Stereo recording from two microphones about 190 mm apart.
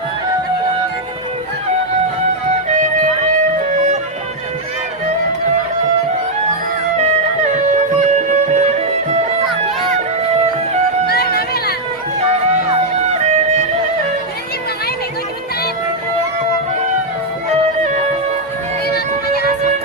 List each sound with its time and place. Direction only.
8.3 s music: 35° right (ahead or behind)
11.1 s music: 55° left (ahead or behind)
13.2 s music: 35° right (ahead or behind)